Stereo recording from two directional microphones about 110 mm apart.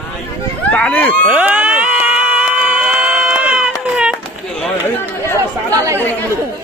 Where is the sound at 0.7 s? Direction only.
15° left (ahead or behind).